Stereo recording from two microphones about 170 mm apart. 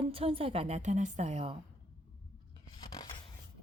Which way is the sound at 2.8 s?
25° left (ahead or behind).